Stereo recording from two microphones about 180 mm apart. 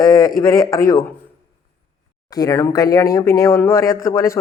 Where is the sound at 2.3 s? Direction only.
20° left (ahead or behind).